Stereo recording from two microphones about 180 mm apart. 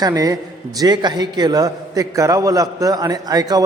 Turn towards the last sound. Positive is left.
turn(degrees=-20)  # may be behind; listen again after turning